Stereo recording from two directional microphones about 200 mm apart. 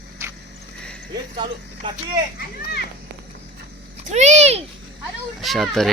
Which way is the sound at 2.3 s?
50° left (ahead or behind).